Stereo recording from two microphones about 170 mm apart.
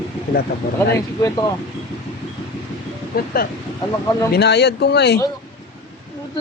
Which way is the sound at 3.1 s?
60° left (ahead or behind).